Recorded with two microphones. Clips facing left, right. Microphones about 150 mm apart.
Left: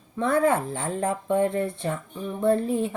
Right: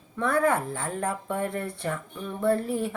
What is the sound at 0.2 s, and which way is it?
Speech, 25° left (ahead or behind).